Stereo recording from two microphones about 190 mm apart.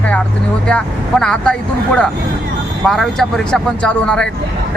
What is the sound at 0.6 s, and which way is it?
Speech, 5° left (ahead or behind).